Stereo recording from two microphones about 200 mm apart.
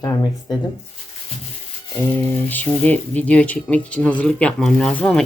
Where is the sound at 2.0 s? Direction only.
10° left (ahead or behind).